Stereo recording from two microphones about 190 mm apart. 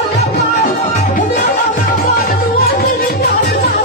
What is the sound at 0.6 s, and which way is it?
Music, 40° left (ahead or behind).